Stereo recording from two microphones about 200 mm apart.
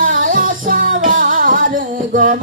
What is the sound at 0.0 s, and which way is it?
Music, 40° right (ahead or behind).